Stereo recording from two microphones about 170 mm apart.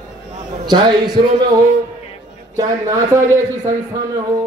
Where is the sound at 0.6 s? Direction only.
25° right (ahead or behind).